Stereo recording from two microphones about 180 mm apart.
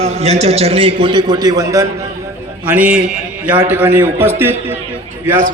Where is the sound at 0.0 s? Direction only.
35° right (ahead or behind); by 1.9 s 20° right (ahead or behind).